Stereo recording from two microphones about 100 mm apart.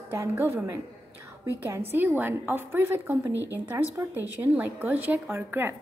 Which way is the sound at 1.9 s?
20° right (ahead or behind).